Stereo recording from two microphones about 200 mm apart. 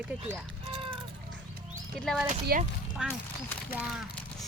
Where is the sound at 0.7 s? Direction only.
25° right (ahead or behind).